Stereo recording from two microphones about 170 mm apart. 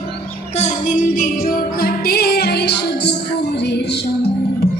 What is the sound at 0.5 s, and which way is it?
Music, 45° left (ahead or behind).